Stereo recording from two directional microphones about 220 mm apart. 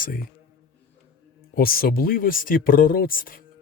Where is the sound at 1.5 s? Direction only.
40° left (ahead or behind).